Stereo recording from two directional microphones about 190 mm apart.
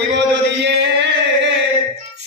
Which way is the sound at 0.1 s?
65° right (ahead or behind).